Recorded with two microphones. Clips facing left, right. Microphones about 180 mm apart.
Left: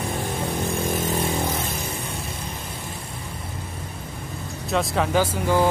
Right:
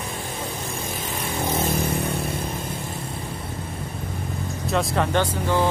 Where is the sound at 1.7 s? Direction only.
60° right (ahead or behind).